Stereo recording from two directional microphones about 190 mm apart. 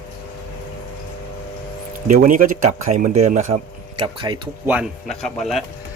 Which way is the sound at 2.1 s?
45° right (ahead or behind).